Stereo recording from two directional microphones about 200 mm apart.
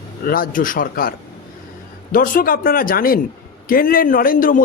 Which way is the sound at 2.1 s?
45° left (ahead or behind).